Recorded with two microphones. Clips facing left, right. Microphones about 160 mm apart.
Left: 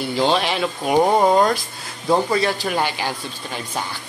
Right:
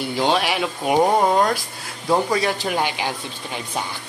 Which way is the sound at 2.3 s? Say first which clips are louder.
Left 1 dB; 10° right (ahead or behind).